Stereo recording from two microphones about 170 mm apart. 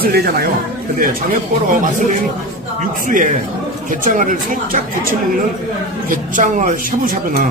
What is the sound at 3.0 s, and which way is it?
Speech, 50° right (ahead or behind).